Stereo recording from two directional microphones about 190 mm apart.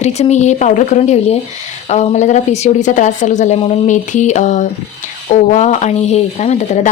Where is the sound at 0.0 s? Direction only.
35° left (ahead or behind).